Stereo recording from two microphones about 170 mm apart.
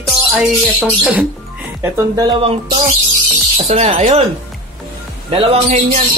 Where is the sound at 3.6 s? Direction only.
40° right (ahead or behind).